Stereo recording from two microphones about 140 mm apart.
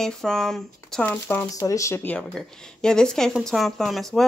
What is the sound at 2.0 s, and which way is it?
Speech, 5° left (ahead or behind).